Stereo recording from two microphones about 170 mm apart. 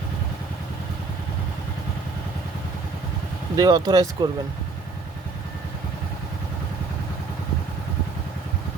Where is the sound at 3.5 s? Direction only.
25° right (ahead or behind).